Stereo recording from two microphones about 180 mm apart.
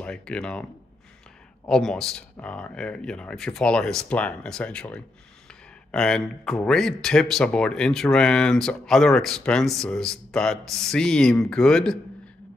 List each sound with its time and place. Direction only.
0.0 s speech: 5° left (ahead or behind)
1.7 s speech: centre (ahead or behind)